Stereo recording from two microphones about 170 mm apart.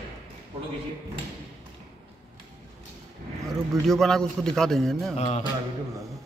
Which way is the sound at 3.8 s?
Centre (ahead or behind).